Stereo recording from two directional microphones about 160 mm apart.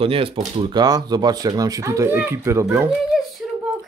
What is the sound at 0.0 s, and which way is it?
Speech, 35° right (ahead or behind).